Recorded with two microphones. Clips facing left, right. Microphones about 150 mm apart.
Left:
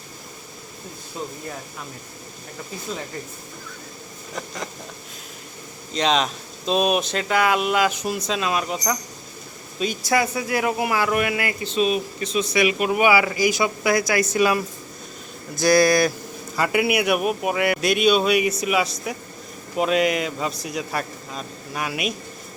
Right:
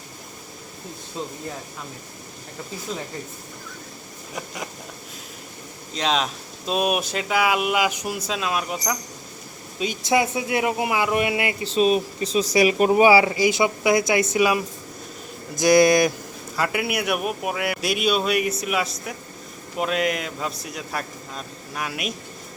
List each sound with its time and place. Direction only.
4.4 s a sound: 10° right (ahead or behind)
5.9 s speech: centre (ahead or behind)
9.7 s speech: 20° right (ahead or behind)
11.7 s speech: 35° right (ahead or behind); by 16.1 s 20° right (ahead or behind)
16.6 s speech: centre (ahead or behind)